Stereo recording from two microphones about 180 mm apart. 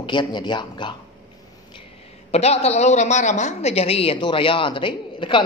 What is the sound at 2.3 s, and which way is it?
A woman's voice, 35° left (ahead or behind).